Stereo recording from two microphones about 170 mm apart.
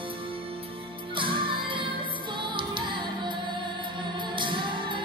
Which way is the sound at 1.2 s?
30° right (ahead or behind).